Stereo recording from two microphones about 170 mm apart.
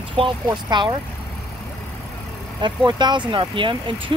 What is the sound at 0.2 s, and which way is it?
Speech, 25° right (ahead or behind).